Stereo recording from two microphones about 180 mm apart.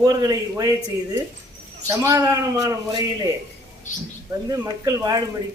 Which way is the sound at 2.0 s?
20° right (ahead or behind).